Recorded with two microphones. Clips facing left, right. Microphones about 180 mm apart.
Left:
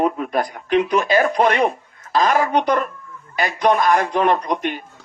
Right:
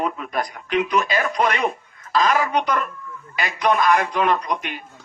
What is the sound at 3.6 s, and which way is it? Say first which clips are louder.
Speech: left 2 dB; 25° left (ahead or behind).